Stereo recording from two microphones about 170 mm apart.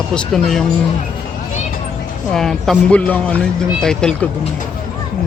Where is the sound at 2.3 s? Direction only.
5° left (ahead or behind).